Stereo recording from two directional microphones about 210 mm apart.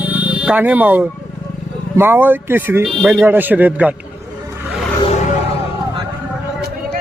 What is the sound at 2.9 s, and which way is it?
Speech, centre (ahead or behind).